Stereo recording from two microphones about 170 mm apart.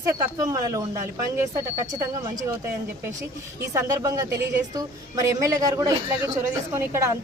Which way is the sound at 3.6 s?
20° right (ahead or behind).